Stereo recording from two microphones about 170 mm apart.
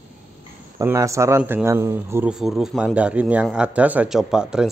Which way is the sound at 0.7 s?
15° right (ahead or behind).